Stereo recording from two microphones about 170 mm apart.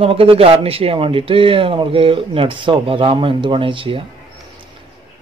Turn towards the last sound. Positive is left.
turn(degrees=-30)  # may be behind; listen again after turning